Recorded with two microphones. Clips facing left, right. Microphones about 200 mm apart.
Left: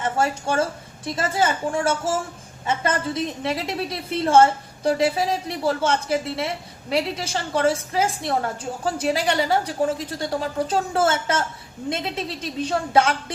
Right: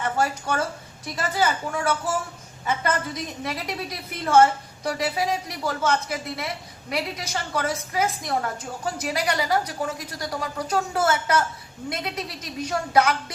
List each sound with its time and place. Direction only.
0.0 s a woman's voice: 25° left (ahead or behind)
3.4 s a woman's voice: 25° left (ahead or behind)